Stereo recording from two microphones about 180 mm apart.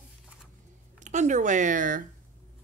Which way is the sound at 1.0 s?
40° right (ahead or behind).